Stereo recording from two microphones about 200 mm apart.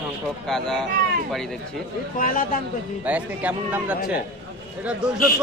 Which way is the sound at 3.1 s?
5° right (ahead or behind).